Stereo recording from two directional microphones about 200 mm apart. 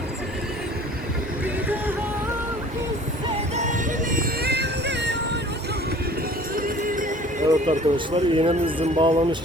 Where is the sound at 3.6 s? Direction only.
40° right (ahead or behind); by 5.4 s 60° right (ahead or behind).